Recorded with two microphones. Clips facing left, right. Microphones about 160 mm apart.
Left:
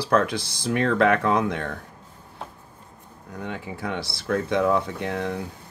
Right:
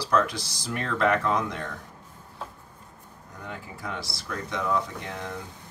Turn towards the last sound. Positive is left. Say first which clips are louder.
# left 8 dB
turn(degrees=65)  # may be behind; listen again after turning